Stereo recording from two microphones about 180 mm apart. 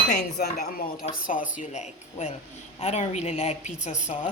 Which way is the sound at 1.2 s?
45° left (ahead or behind).